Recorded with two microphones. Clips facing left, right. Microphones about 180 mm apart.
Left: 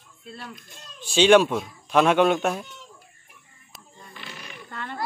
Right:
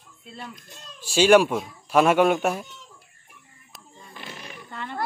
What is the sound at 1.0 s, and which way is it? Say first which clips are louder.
Speech: even; 10° right (ahead or behind).